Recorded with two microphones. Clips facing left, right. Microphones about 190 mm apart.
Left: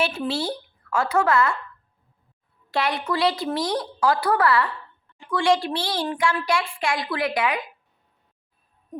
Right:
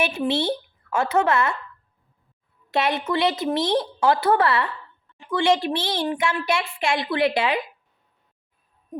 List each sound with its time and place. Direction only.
0.0 s a woman's voice: 15° right (ahead or behind)
2.6 s a child's voice: 20° right (ahead or behind)